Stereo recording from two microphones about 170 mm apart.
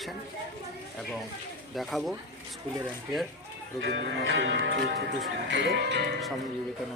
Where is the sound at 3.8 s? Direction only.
90° right.